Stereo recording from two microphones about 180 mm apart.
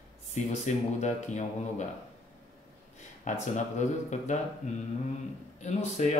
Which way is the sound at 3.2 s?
40° left (ahead or behind).